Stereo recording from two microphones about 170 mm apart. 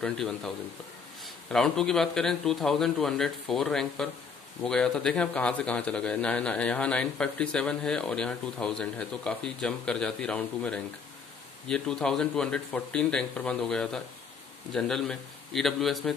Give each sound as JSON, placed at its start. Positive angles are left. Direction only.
{"t": 0.0, "sound": "a man's voice", "side_deg": 0}